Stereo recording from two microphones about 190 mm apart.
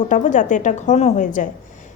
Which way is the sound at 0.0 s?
40° left (ahead or behind).